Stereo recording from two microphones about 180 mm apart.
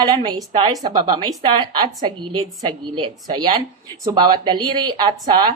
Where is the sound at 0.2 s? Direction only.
25° right (ahead or behind).